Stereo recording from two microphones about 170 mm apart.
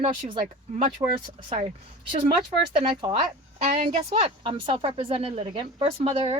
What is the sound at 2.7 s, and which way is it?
Speech, 25° right (ahead or behind).